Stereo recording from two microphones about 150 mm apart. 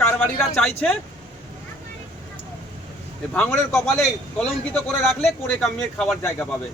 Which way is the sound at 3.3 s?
10° left (ahead or behind).